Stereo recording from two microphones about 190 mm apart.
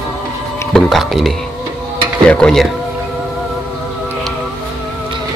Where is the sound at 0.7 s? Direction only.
Centre (ahead or behind).